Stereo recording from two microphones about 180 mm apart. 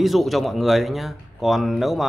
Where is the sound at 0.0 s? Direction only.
Centre (ahead or behind).